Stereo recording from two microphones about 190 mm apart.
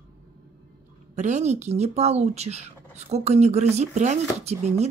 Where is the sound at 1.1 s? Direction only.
35° right (ahead or behind).